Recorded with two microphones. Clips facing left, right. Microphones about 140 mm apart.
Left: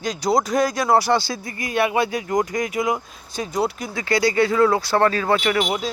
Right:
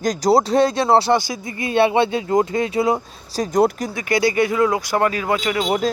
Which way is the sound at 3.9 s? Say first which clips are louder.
Right 1 dB; 20° right (ahead or behind).